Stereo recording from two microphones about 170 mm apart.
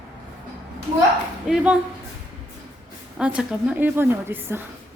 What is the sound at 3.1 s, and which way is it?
A woman's voice, 5° right (ahead or behind).